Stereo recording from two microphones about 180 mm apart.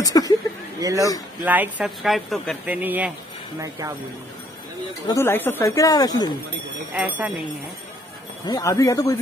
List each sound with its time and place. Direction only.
0.0 s speech: 20° left (ahead or behind)
0.7 s speech: 20° right (ahead or behind)
1.4 s speech: 10° right (ahead or behind)
5.0 s speech: 15° left (ahead or behind)
6.9 s speech: 10° right (ahead or behind)
8.5 s speech: 20° left (ahead or behind)